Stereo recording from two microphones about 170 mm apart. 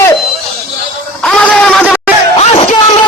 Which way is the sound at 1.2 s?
5° left (ahead or behind).